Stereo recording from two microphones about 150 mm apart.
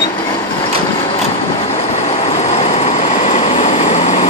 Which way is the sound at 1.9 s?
45° left (ahead or behind).